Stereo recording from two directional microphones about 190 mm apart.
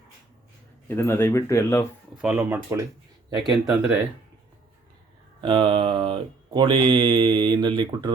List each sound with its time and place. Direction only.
0.9 s speech: 15° left (ahead or behind)
2.2 s speech: 10° right (ahead or behind)
3.4 s speech: centre (ahead or behind)
5.4 s speech: 25° right (ahead or behind)